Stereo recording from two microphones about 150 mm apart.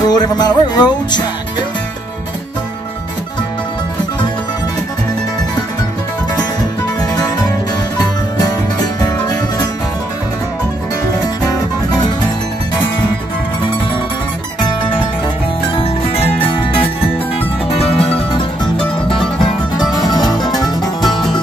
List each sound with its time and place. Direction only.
0.0 s speech: 25° left (ahead or behind)
7.0 s music: 25° left (ahead or behind)
15.7 s music: 35° left (ahead or behind)
20.1 s music: 30° left (ahead or behind)
21.0 s music: centre (ahead or behind)